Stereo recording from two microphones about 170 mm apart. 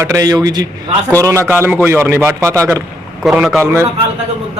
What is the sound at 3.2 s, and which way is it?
Speech, centre (ahead or behind).